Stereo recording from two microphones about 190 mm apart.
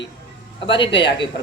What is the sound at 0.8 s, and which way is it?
Speech, 25° left (ahead or behind).